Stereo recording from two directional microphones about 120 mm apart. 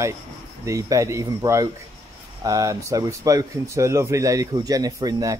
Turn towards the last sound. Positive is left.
turn(degrees=-30)  # may be behind; listen again after turning